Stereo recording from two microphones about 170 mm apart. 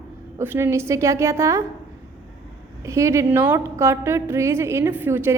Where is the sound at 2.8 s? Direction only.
15° right (ahead or behind).